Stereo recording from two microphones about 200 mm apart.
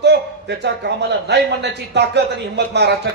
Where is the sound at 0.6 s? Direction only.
60° right (ahead or behind).